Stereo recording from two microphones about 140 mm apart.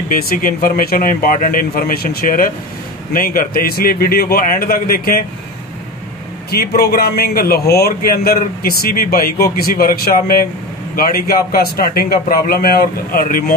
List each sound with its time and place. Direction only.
0.1 s a man's voice: 90° left
6.5 s a man's voice: 90° left